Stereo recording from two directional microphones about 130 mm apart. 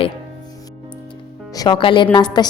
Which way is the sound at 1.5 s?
30° left (ahead or behind).